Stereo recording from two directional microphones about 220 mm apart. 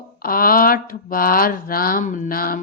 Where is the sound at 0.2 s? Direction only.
40° left (ahead or behind).